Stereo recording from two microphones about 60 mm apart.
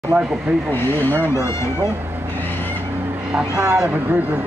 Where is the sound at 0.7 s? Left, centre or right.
Left.